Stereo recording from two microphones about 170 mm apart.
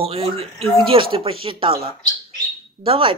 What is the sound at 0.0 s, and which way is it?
Speech, 35° right (ahead or behind).